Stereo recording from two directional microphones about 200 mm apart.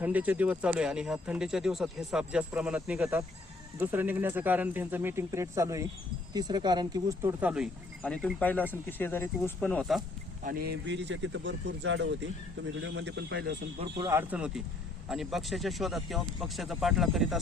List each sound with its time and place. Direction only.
0.0 s speech: 10° right (ahead or behind)
8.0 s speech: 5° left (ahead or behind)
10.4 s speech: 50° right (ahead or behind)
13.7 s speech: 20° right (ahead or behind); by 17.4 s centre (ahead or behind)